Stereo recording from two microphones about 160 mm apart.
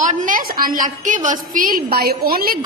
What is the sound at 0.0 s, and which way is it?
A woman's voice, 50° right (ahead or behind).